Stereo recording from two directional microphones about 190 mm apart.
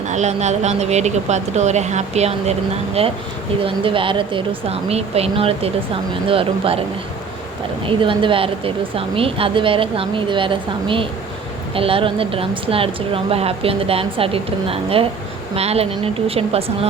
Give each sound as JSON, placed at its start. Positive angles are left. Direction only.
{"t": 0.1, "sound": "speech", "side_deg": -35}
{"t": 7.9, "sound": "speech", "side_deg": -25}